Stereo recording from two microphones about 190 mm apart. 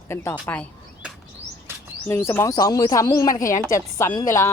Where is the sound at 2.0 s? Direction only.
10° left (ahead or behind).